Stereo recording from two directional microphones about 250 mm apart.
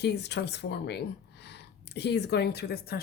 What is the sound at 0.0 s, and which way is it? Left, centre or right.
Speech, left.